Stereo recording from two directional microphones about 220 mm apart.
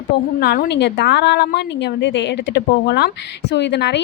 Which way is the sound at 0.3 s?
45° left (ahead or behind).